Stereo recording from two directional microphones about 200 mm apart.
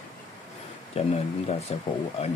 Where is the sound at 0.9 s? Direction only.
30° left (ahead or behind).